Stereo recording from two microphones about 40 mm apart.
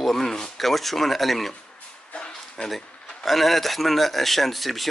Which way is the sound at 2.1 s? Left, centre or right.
Left.